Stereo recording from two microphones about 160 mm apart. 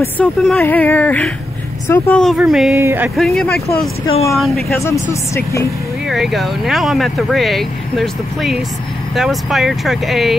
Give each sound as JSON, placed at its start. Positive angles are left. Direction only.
{"t": 0.0, "sound": "a woman's voice", "side_deg": 5}
{"t": 2.8, "sound": "speech", "side_deg": -15}
{"t": 3.2, "sound": "speech", "side_deg": 5}
{"t": 4.7, "sound": "a woman's voice", "side_deg": 20}
{"t": 6.0, "sound": "speech", "side_deg": 0}